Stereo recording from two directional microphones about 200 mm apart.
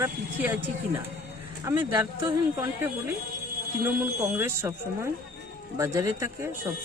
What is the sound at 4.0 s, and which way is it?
Speech, 10° right (ahead or behind).